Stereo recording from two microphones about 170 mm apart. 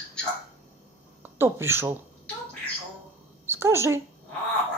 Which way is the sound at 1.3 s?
15° right (ahead or behind).